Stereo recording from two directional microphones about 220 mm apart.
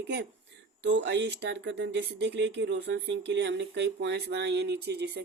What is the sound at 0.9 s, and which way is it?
Speech, 55° right (ahead or behind).